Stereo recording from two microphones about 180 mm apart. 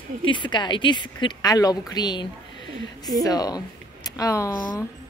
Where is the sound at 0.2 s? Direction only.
25° left (ahead or behind).